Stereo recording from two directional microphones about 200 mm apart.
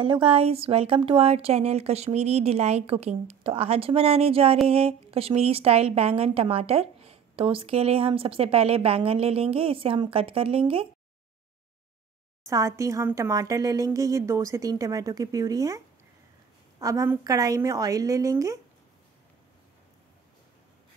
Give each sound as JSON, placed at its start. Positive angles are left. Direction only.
{"t": 0.0, "sound": "a woman's voice", "side_deg": -25}
{"t": 12.4, "sound": "speech", "side_deg": -15}
{"t": 16.8, "sound": "speech", "side_deg": -15}